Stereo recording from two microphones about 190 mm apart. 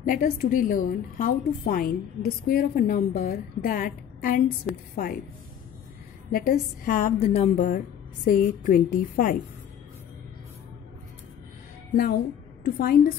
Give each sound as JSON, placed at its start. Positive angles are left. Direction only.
{"t": 0.0, "sound": "a woman's voice", "side_deg": 45}
{"t": 4.7, "sound": "a woman's voice", "side_deg": 5}
{"t": 6.3, "sound": "a woman's voice", "side_deg": 50}
{"t": 11.9, "sound": "a woman's voice", "side_deg": 50}